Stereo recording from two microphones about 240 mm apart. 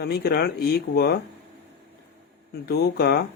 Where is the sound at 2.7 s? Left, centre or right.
Left.